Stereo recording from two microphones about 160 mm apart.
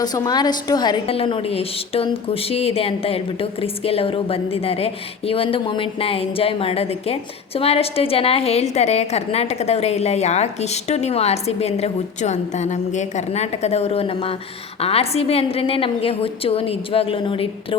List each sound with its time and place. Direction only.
0.0 s a woman's voice: 25° left (ahead or behind)